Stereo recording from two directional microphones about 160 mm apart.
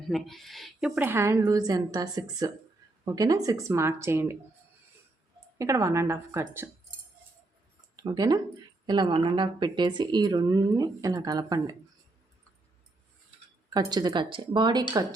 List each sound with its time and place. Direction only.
0.1 s a woman's voice: centre (ahead or behind); by 4.4 s 15° right (ahead or behind)
5.5 s a woman's voice: 20° right (ahead or behind)
7.9 s a woman's voice: 25° right (ahead or behind)
13.7 s a woman's voice: 25° right (ahead or behind)